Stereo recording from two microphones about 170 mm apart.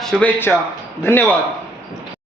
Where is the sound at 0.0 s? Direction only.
5° left (ahead or behind).